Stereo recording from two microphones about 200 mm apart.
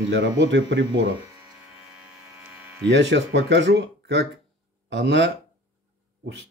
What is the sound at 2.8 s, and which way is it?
Speech, 60° right (ahead or behind).